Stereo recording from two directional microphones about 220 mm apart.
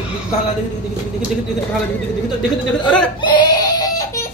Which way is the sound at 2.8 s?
20° left (ahead or behind).